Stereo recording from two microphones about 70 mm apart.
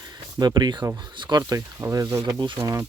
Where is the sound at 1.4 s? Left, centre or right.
Right.